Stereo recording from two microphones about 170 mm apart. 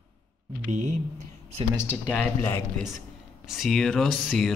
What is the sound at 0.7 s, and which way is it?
Speech, 45° right (ahead or behind).